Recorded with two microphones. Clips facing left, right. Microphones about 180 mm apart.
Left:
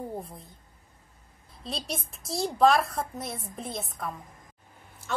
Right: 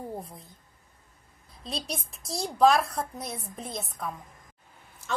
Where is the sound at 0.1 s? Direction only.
Centre (ahead or behind).